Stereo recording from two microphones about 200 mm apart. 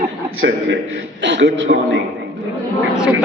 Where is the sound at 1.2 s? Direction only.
65° right (ahead or behind).